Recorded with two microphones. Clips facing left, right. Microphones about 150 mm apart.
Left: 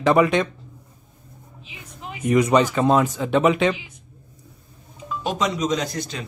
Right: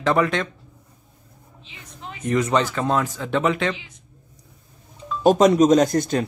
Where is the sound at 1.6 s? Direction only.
10° left (ahead or behind).